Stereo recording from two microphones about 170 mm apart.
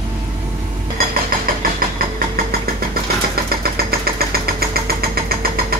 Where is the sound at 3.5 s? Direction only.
65° right (ahead or behind).